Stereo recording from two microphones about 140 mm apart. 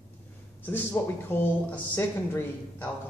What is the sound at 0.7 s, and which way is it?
Speech, 10° left (ahead or behind).